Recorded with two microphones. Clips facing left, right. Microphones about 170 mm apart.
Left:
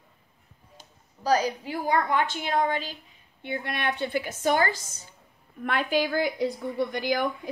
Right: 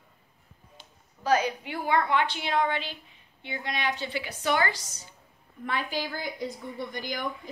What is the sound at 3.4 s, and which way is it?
A woman's voice, 55° left (ahead or behind).